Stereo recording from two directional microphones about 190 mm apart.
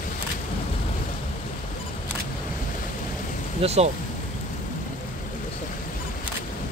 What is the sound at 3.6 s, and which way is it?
Speech, 35° right (ahead or behind).